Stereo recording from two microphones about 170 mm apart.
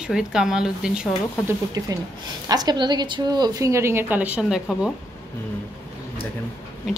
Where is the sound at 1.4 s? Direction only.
20° right (ahead or behind); by 4.9 s centre (ahead or behind).